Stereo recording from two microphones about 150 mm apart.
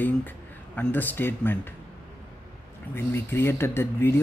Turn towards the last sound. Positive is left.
turn(degrees=15)  # may be behind; listen again after turning